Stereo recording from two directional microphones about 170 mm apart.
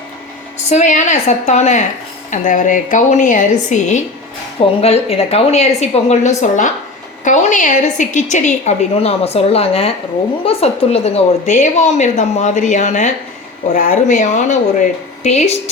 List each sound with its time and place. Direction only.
0.7 s a woman's voice: 45° left (ahead or behind)